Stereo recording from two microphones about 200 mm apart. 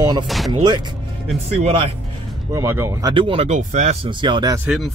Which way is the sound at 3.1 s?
25° right (ahead or behind).